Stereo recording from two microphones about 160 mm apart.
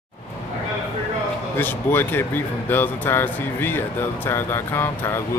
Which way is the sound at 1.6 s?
15° left (ahead or behind).